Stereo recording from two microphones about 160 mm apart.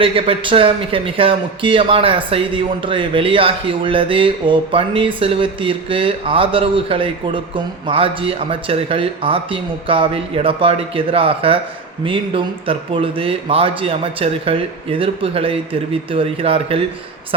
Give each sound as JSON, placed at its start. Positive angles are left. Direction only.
{"t": 0.0, "sound": "speech", "side_deg": -35}